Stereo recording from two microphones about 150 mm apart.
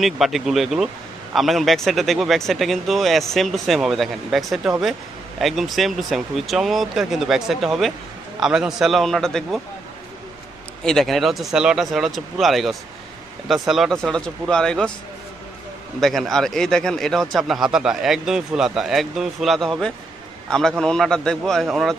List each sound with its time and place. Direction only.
0.0 s speech: centre (ahead or behind)
10.8 s speech: 5° left (ahead or behind)
16.0 s a man's voice: centre (ahead or behind)